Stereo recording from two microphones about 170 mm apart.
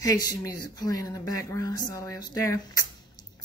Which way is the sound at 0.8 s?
20° left (ahead or behind).